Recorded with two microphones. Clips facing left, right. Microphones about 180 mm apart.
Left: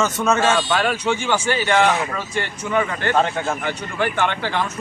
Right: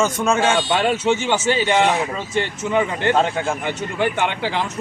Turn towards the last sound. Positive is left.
turn(degrees=-15)  # may be behind; listen again after turning